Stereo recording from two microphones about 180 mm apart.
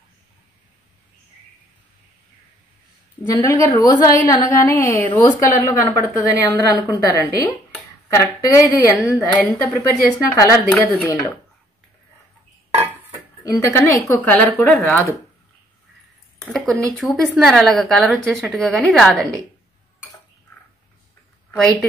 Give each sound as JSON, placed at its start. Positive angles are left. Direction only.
{"t": 3.4, "sound": "a woman's voice", "side_deg": 20}
{"t": 8.9, "sound": "a woman's voice", "side_deg": 10}
{"t": 10.3, "sound": "a woman's voice", "side_deg": 15}
{"t": 13.4, "sound": "speech", "side_deg": 20}
{"t": 14.0, "sound": "a woman's voice", "side_deg": 10}
{"t": 16.5, "sound": "a woman's voice", "side_deg": 0}